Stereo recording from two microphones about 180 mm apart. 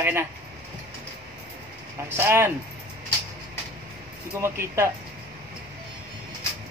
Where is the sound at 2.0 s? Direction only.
15° right (ahead or behind).